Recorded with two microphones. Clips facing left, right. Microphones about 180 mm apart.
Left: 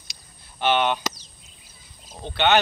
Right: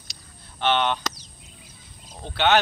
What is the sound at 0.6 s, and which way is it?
Speech, 10° left (ahead or behind).